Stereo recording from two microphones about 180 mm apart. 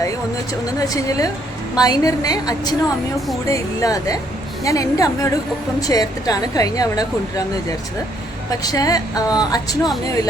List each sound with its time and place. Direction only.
0.6 s a woman's voice: 20° left (ahead or behind)
8.4 s a woman's voice: 20° left (ahead or behind)